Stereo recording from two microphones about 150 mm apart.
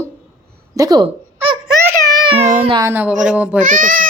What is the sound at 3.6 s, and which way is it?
Speech, 60° right (ahead or behind).